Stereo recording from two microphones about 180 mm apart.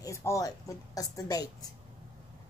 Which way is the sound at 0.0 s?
15° left (ahead or behind).